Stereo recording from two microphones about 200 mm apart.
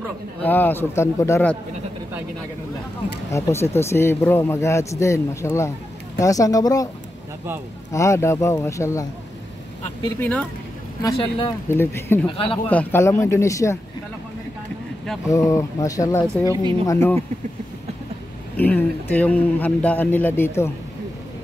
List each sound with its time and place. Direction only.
0.4 s speech: 10° left (ahead or behind)
3.3 s speech: 15° left (ahead or behind)
7.9 s speech: 15° left (ahead or behind)
10.0 s speech: 10° left (ahead or behind)
11.0 s speech: 20° left (ahead or behind)
11.7 s speech: 10° left (ahead or behind)
12.3 s speech: 25° left (ahead or behind)
12.6 s speech: 10° left (ahead or behind)
15.2 s speech: 15° left (ahead or behind)
18.6 s speech: 10° left (ahead or behind)